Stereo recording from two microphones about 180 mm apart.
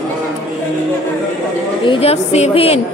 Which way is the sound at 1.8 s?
30° left (ahead or behind).